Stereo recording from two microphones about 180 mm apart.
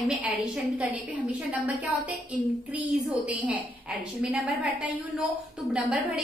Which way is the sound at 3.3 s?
10° right (ahead or behind).